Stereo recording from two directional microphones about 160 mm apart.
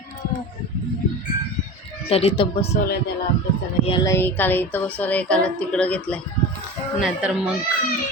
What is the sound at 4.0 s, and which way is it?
Speech, 15° left (ahead or behind).